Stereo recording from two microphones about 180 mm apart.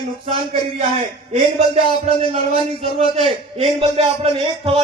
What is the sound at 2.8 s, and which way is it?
A man's voice, 35° right (ahead or behind).